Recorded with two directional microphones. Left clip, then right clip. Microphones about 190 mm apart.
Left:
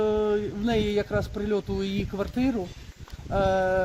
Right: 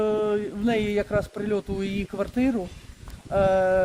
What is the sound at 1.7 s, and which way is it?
Speech, 40° right (ahead or behind).